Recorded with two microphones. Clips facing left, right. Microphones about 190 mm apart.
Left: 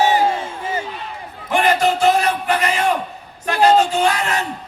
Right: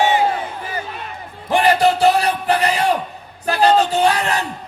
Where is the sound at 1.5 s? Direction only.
35° right (ahead or behind).